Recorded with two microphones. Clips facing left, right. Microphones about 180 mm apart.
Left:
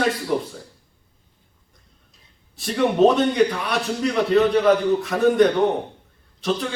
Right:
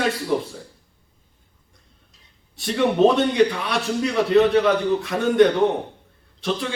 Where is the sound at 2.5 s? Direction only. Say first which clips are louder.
Even; centre (ahead or behind).